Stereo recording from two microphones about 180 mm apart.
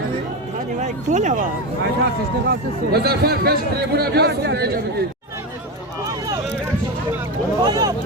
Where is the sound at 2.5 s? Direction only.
60° right (ahead or behind).